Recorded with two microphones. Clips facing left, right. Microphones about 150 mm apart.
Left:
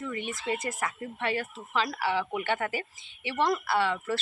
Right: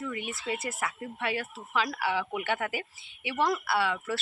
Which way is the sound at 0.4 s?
5° right (ahead or behind).